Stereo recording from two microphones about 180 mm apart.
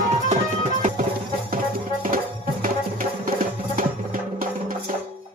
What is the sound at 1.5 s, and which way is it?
Music, 50° right (ahead or behind).